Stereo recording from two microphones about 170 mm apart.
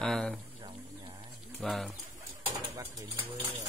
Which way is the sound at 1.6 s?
Centre (ahead or behind).